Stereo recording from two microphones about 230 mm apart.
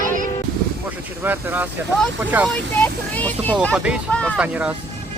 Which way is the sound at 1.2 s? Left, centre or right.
Centre.